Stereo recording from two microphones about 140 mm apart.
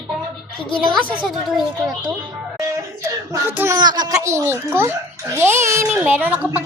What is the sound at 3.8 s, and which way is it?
A child's voice, 30° right (ahead or behind).